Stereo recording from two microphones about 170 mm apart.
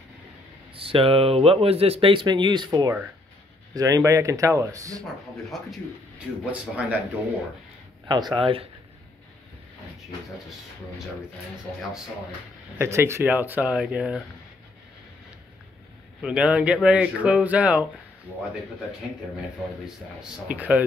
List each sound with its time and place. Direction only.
0.7 s speech: 30° right (ahead or behind)
5.5 s a man's voice: centre (ahead or behind)
8.1 s speech: 25° right (ahead or behind)
12.7 s speech: 15° right (ahead or behind)
16.2 s speech: 5° right (ahead or behind)
20.2 s speech: 10° right (ahead or behind)